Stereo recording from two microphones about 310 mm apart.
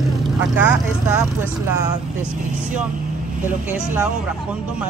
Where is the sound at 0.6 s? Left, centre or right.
Centre.